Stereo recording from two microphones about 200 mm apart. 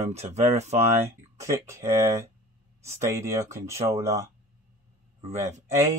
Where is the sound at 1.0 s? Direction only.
15° right (ahead or behind).